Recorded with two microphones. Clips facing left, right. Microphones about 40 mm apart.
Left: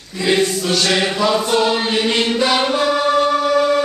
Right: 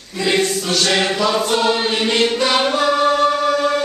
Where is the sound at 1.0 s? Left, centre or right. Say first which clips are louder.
Left 1 dB; centre.